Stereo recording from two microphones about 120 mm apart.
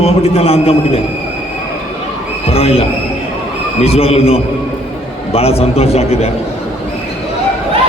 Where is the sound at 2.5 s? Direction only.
55° left (ahead or behind).